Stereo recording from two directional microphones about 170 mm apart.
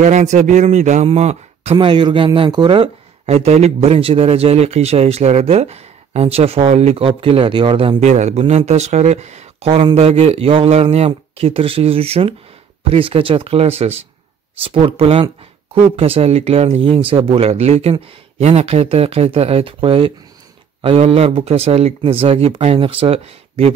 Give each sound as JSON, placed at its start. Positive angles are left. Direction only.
{"t": 0.0, "sound": "a man's voice", "side_deg": -45}